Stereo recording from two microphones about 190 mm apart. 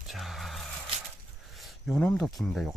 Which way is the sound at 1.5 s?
Centre (ahead or behind).